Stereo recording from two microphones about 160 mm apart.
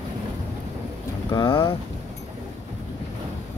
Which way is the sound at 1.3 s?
30° left (ahead or behind).